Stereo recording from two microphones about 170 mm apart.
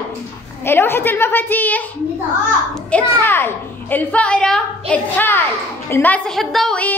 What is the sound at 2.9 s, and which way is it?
A child's voice, 10° left (ahead or behind).